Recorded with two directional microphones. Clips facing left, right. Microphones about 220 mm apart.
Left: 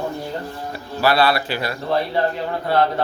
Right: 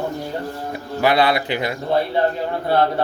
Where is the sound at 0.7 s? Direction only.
20° right (ahead or behind).